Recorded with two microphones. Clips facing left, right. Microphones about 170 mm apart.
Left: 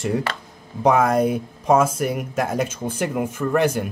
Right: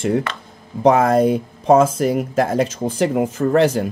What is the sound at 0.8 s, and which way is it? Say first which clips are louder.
Speech: right 4 dB; 30° right (ahead or behind).